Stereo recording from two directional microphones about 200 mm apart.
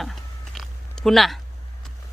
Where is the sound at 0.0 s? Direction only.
Centre (ahead or behind).